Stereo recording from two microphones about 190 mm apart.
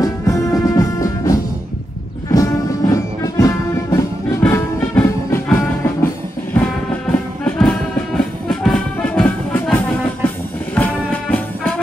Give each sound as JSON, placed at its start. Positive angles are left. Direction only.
{"t": 0.0, "sound": "music", "side_deg": 15}